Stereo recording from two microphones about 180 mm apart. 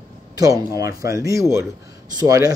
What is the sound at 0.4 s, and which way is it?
A man's voice, 20° right (ahead or behind).